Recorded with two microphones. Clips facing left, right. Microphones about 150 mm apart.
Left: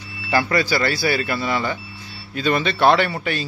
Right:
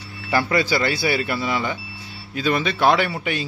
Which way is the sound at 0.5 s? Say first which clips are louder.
Even; 20° right (ahead or behind).